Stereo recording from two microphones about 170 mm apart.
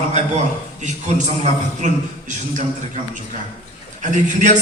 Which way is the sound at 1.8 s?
45° right (ahead or behind).